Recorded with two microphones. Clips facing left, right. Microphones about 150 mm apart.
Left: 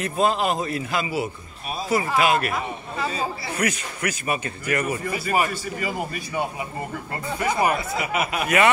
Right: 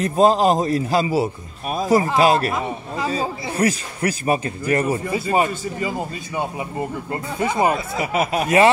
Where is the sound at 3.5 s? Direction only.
35° right (ahead or behind).